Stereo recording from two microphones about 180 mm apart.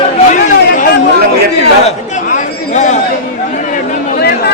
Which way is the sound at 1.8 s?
40° left (ahead or behind).